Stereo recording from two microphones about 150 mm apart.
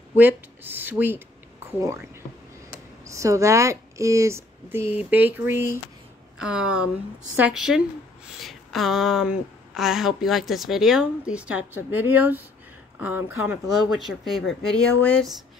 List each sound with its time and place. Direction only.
0.1 s speech: 10° right (ahead or behind)
3.1 s a woman's voice: 20° right (ahead or behind); by 15.1 s 5° left (ahead or behind)